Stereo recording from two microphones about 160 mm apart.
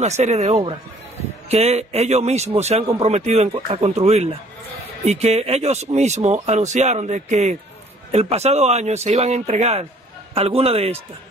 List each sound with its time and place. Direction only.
0.0 s speech: 45° right (ahead or behind)